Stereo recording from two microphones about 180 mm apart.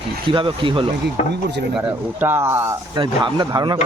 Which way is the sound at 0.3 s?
25° right (ahead or behind).